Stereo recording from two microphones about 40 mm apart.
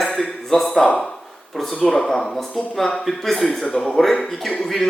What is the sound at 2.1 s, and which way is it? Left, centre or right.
A man's voice, centre.